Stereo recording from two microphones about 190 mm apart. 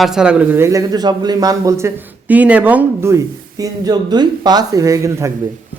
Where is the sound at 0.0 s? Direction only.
5° right (ahead or behind).